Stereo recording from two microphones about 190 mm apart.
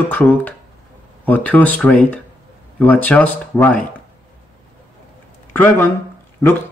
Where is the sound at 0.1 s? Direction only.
10° left (ahead or behind).